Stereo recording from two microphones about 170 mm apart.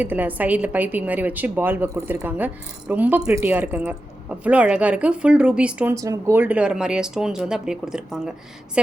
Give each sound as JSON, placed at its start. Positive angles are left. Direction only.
{"t": 0.0, "sound": "a woman's voice", "side_deg": -10}
{"t": 5.9, "sound": "speech", "side_deg": -20}